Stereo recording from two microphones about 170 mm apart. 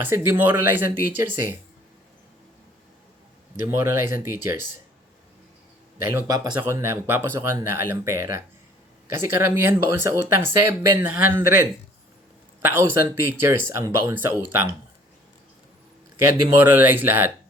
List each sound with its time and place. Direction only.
0.0 s speech: 15° right (ahead or behind)
3.7 s speech: 15° right (ahead or behind)
6.0 s speech: 15° right (ahead or behind)
16.5 s speech: 10° right (ahead or behind)